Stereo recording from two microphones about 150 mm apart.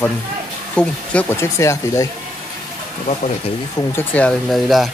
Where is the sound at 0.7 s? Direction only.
10° left (ahead or behind).